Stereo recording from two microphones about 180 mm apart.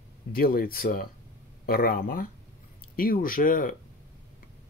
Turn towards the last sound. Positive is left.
turn(degrees=50)  # may be behind; listen again after turning